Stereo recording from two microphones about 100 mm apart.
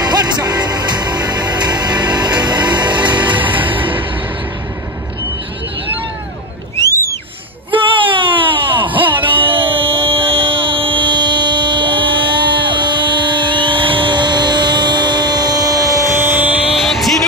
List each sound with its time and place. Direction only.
0.0 s music: 40° right (ahead or behind)
3.3 s music: 15° right (ahead or behind)
6.8 s a sound: 30° left (ahead or behind)
7.7 s a sound: 60° right (ahead or behind)
9.1 s music: 60° right (ahead or behind); by 16.1 s 35° right (ahead or behind)
16.2 s music: 20° right (ahead or behind)
16.7 s music: centre (ahead or behind)